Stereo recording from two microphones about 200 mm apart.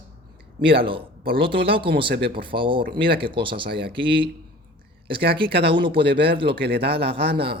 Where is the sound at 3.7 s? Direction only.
55° right (ahead or behind).